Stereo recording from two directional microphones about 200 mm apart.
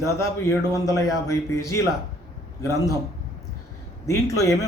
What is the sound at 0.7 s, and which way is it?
Speech, 15° left (ahead or behind).